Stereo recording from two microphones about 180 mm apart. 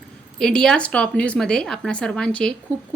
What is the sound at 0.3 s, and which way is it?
Speech, 5° left (ahead or behind).